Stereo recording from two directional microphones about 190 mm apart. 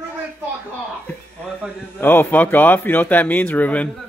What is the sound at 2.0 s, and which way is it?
Speech, 10° left (ahead or behind).